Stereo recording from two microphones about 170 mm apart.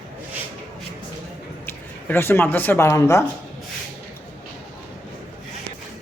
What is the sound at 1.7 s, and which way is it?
Speech, 15° left (ahead or behind).